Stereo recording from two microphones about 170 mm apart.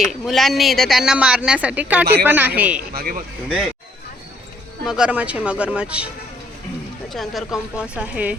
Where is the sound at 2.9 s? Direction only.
55° right (ahead or behind).